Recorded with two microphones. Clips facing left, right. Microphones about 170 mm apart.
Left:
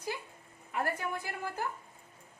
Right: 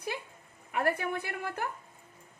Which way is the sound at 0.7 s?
65° right (ahead or behind).